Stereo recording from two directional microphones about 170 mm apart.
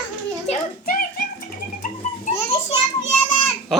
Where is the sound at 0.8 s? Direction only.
60° left (ahead or behind).